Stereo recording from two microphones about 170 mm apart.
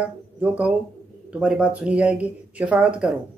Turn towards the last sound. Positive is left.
turn(degrees=-5)  # may be behind; listen again after turning